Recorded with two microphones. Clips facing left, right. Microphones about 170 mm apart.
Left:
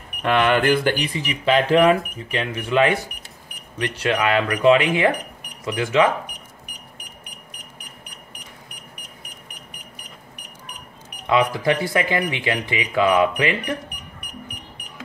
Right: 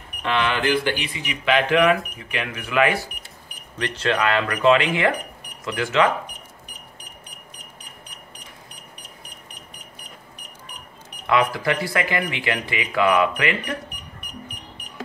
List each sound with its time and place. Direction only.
0.2 s speech: 50° left (ahead or behind); by 3.1 s 25° left (ahead or behind)
3.7 s speech: 10° left (ahead or behind)
11.2 s speech: 20° left (ahead or behind)